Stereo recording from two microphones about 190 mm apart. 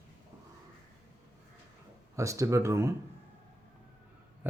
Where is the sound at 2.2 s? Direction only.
15° right (ahead or behind).